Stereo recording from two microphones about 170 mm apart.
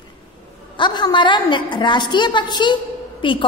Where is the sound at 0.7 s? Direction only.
25° left (ahead or behind).